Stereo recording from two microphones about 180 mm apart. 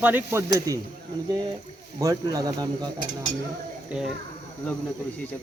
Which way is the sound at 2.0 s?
20° right (ahead or behind).